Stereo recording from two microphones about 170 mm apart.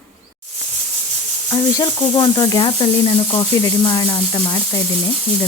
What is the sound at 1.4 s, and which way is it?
Speech, 25° left (ahead or behind).